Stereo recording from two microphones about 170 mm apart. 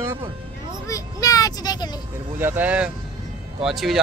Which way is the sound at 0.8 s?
20° left (ahead or behind).